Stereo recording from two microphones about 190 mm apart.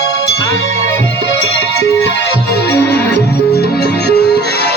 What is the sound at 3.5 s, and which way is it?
Music, 55° left (ahead or behind).